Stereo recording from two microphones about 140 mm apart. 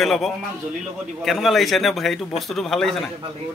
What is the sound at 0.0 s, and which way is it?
A man's voice, centre (ahead or behind).